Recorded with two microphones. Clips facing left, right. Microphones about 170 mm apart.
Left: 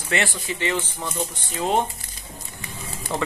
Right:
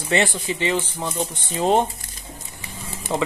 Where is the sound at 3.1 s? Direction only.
10° right (ahead or behind).